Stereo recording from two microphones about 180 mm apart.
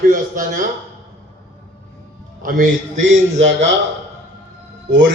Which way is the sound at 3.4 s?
90° right.